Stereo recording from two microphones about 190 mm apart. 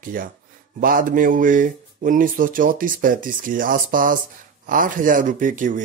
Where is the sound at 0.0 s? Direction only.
45° right (ahead or behind).